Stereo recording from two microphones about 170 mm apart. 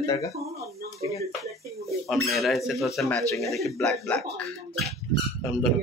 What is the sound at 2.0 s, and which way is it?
Speech, centre (ahead or behind).